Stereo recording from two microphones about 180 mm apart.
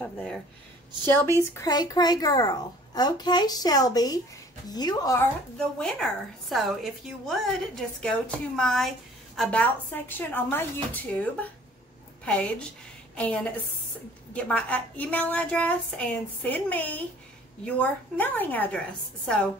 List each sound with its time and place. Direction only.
0.0 s a sound: 5° left (ahead or behind)
1.0 s a woman's voice: 10° left (ahead or behind)
12.3 s a woman's voice: 5° left (ahead or behind)